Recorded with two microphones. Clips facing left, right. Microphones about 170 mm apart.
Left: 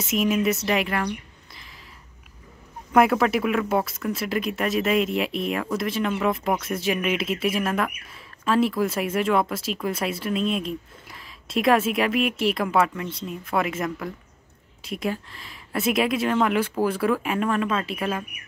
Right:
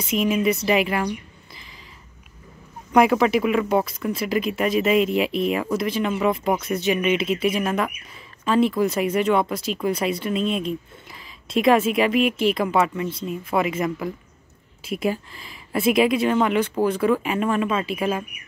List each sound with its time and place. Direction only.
0.0 s speech: centre (ahead or behind)
2.9 s speech: centre (ahead or behind)